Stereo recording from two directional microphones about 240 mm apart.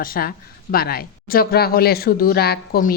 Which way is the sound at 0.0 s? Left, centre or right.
Left.